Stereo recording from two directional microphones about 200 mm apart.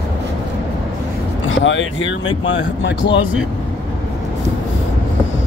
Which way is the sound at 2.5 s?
65° left (ahead or behind).